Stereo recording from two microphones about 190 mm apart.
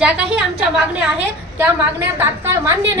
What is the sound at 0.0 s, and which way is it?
Speech, 5° right (ahead or behind).